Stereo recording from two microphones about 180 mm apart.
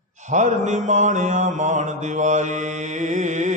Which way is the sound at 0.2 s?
40° right (ahead or behind).